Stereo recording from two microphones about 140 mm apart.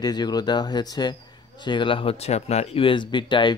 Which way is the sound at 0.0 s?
30° left (ahead or behind).